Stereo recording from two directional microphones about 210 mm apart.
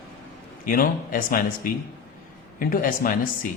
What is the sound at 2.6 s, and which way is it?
Speech, 40° left (ahead or behind).